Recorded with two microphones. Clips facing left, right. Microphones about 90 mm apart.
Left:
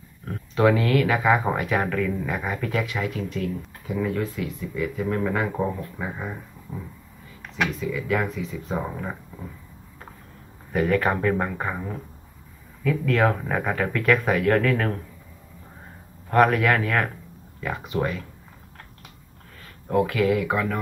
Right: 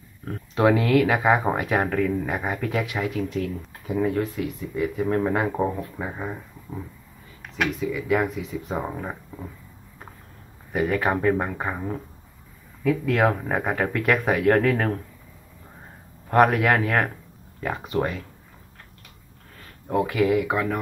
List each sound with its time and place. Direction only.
0.6 s speech: 25° right (ahead or behind)
3.8 s speech: 35° right (ahead or behind)
7.8 s speech: 20° right (ahead or behind)
10.7 s speech: 15° right (ahead or behind)
16.3 s speech: 25° right (ahead or behind)
17.6 s speech: 40° right (ahead or behind)
19.9 s speech: 20° right (ahead or behind)